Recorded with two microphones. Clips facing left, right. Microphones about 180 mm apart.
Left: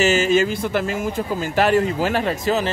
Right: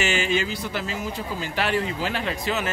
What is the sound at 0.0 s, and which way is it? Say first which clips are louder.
Speech: left 7 dB; 40° left (ahead or behind).